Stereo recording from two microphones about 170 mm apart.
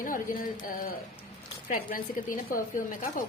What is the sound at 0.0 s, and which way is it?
Speech, 55° left (ahead or behind).